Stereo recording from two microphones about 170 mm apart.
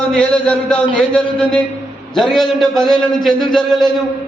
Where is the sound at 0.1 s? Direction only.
5° left (ahead or behind).